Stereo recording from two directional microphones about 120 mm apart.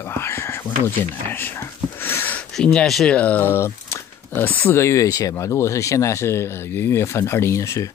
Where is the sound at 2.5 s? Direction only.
5° left (ahead or behind).